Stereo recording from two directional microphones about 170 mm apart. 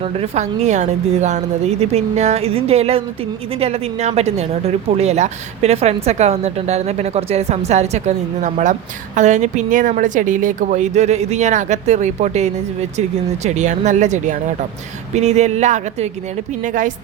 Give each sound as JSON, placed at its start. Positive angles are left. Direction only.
{"t": 0.0, "sound": "a woman's voice", "side_deg": -40}